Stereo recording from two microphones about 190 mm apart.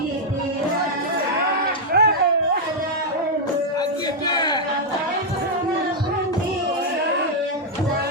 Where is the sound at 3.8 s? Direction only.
20° left (ahead or behind).